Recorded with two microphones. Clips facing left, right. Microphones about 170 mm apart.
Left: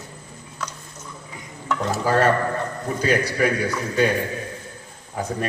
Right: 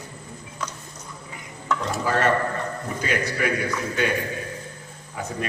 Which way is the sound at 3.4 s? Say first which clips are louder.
Left 4 dB; 40° left (ahead or behind).